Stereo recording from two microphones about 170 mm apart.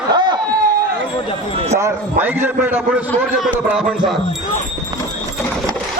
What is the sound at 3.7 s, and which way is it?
Music, 5° right (ahead or behind).